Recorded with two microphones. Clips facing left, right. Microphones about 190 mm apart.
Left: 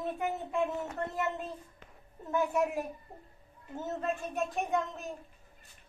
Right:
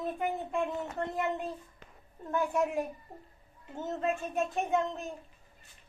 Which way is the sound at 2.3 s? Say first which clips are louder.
Even; 5° left (ahead or behind).